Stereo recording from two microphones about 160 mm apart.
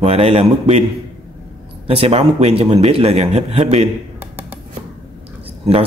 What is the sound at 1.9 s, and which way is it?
Speech, 40° right (ahead or behind).